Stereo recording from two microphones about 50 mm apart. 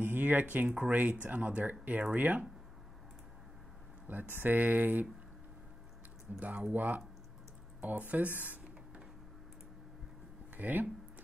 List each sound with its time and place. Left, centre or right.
0.0 s a sound: right
0.7 s speech: right
4.1 s speech: right
6.4 s speech: right
10.5 s speech: right